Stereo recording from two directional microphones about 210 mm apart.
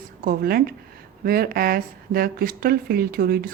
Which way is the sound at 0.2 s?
45° right (ahead or behind).